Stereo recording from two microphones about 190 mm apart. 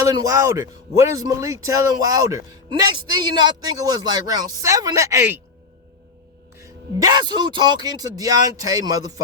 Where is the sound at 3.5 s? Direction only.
20° right (ahead or behind).